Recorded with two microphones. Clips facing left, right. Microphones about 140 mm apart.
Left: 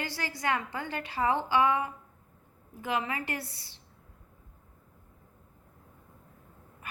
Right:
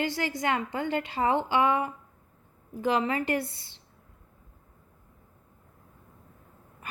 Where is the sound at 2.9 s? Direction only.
30° right (ahead or behind).